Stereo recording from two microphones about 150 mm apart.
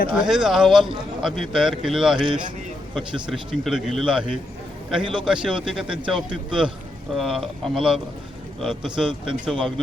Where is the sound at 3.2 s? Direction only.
5° right (ahead or behind).